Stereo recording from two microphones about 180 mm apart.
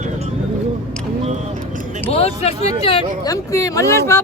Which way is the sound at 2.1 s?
35° left (ahead or behind).